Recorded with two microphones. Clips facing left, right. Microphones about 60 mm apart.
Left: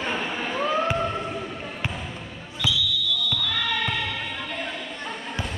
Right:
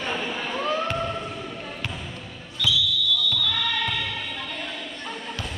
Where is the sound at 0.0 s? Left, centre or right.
Centre.